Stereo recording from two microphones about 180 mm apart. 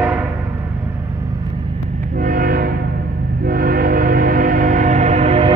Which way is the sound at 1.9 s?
50° right (ahead or behind).